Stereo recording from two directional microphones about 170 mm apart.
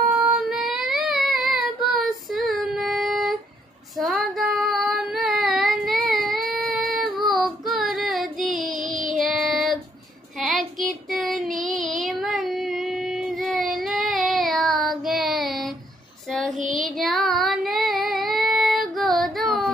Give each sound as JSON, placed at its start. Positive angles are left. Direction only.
{"t": 0.1, "sound": "child singing", "side_deg": -5}
{"t": 8.8, "sound": "child singing", "side_deg": -50}
{"t": 9.2, "sound": "child singing", "side_deg": 0}
{"t": 11.4, "sound": "child singing", "side_deg": -50}
{"t": 11.7, "sound": "child singing", "side_deg": 0}